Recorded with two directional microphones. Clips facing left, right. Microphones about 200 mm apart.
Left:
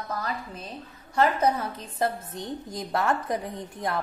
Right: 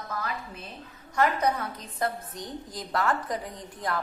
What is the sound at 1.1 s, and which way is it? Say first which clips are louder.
A woman's voice: left 2 dB; 25° left (ahead or behind).